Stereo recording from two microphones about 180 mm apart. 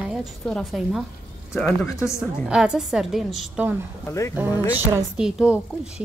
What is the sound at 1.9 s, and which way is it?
Speech, 15° left (ahead or behind).